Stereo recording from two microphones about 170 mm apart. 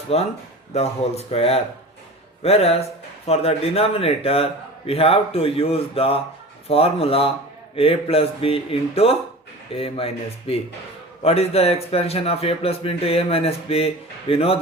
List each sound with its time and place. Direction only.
0.1 s a man's voice: 40° left (ahead or behind)